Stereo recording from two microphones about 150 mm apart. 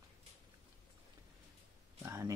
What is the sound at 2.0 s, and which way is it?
Oink, 15° right (ahead or behind).